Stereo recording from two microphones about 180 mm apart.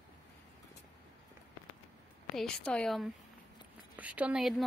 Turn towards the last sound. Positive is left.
turn(degrees=0)  # may be behind; listen again after turning